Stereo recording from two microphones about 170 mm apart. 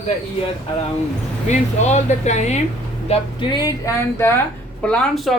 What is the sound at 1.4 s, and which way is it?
Speech, 45° left (ahead or behind).